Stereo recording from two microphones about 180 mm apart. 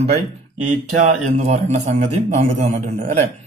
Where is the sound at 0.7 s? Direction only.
40° right (ahead or behind).